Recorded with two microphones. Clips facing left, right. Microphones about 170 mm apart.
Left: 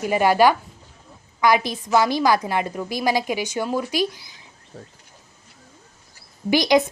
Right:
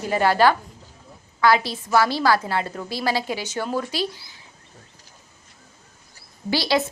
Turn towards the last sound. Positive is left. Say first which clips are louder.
# left 5 dB
turn(degrees=15)  # may be behind; listen again after turning